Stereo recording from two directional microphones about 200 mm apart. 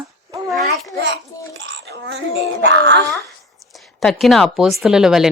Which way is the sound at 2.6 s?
55° right (ahead or behind).